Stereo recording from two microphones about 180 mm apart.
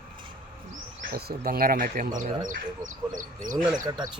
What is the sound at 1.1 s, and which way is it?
Speech, 55° right (ahead or behind).